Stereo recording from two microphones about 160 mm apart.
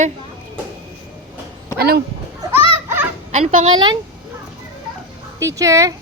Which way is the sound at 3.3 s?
45° right (ahead or behind).